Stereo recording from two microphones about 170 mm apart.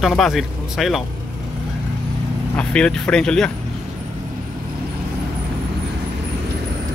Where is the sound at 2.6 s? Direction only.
5° left (ahead or behind).